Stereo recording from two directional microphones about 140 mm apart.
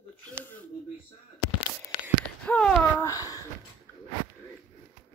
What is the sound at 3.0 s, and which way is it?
Speech, 25° left (ahead or behind).